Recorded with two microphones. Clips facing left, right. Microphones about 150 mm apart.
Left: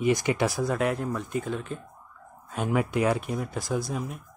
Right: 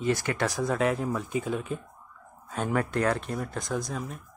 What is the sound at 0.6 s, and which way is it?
Speech, centre (ahead or behind).